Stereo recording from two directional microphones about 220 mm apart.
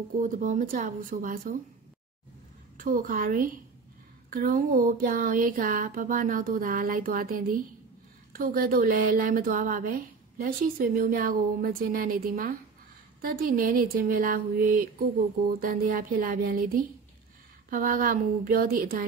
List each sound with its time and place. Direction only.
0.2 s speech: 35° right (ahead or behind)
2.8 s speech: 40° right (ahead or behind)